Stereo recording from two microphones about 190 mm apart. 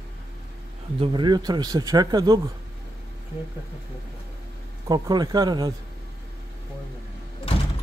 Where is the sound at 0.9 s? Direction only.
25° right (ahead or behind).